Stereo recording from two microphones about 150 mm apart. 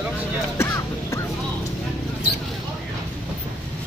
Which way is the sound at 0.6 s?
20° left (ahead or behind).